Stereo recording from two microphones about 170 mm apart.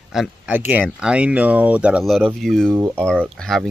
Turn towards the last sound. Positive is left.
turn(degrees=0)  # may be behind; listen again after turning